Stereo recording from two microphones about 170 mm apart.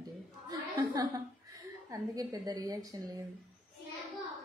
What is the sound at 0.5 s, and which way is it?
A woman's voice, 20° right (ahead or behind).